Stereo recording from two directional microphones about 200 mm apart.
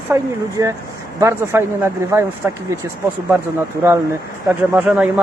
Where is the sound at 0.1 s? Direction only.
15° right (ahead or behind).